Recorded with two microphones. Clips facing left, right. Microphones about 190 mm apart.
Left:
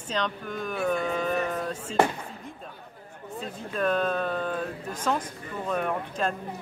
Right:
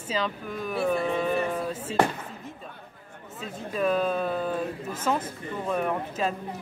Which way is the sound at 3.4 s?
5° right (ahead or behind).